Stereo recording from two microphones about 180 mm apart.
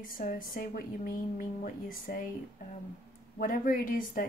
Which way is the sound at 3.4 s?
50° left (ahead or behind).